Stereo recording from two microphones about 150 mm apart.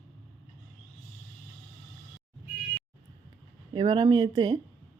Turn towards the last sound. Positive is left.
turn(degrees=-30)  # may be behind; listen again after turning